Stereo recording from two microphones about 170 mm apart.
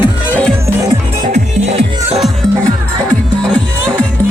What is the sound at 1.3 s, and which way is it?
Music, 40° right (ahead or behind).